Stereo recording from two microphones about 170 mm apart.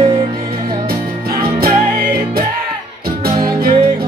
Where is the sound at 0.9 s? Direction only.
60° right (ahead or behind).